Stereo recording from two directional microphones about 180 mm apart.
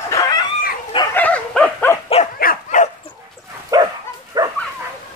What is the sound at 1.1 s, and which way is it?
Dog, 10° left (ahead or behind).